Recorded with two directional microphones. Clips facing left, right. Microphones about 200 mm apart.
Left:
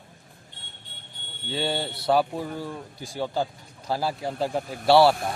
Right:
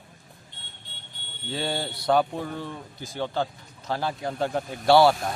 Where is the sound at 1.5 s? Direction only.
Centre (ahead or behind).